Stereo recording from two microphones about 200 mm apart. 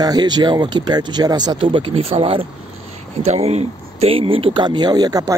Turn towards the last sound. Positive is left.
turn(degrees=-20)  # may be behind; listen again after turning